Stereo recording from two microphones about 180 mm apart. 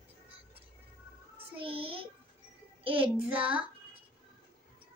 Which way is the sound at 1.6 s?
30° right (ahead or behind).